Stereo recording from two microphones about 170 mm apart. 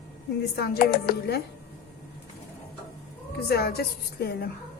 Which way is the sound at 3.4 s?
70° left (ahead or behind).